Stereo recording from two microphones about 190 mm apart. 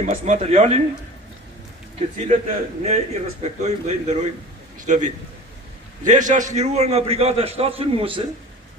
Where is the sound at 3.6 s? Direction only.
35° right (ahead or behind).